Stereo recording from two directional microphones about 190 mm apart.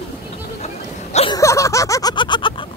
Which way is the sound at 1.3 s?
15° left (ahead or behind).